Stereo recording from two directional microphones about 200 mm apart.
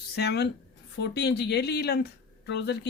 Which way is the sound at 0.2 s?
55° left (ahead or behind).